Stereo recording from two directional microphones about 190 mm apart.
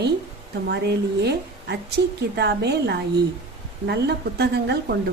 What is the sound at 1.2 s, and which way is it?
A woman's voice, 60° right (ahead or behind).